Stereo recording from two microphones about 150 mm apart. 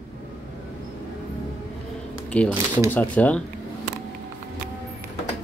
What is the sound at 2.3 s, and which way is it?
Shuffling cards, 10° left (ahead or behind).